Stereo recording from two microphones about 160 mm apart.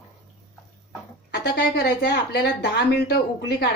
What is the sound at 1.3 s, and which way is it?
A woman's voice, 80° left.